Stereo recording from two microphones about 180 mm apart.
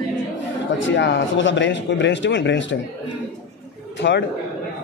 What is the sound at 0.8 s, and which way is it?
Speech, 85° left.